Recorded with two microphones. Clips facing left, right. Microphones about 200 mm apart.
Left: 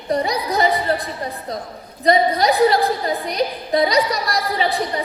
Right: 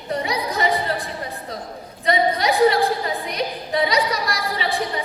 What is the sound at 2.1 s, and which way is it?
A woman's voice, 35° left (ahead or behind).